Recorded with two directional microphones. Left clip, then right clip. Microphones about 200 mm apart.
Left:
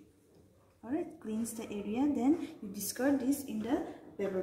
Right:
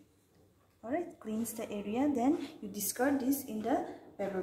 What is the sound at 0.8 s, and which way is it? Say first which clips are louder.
A woman's voice: right 1 dB; 35° right (ahead or behind).